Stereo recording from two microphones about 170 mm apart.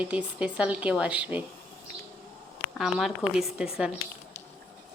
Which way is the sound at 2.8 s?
Centre (ahead or behind).